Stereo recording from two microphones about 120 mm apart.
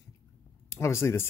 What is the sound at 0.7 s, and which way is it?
Speech, 20° left (ahead or behind).